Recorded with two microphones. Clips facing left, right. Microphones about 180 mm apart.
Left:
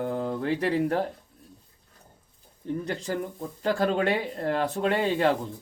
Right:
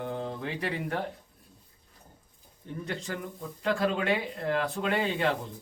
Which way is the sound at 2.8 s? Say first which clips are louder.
Left 1 dB; 40° left (ahead or behind).